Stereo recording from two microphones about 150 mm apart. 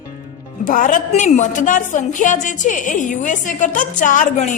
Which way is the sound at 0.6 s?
60° left (ahead or behind).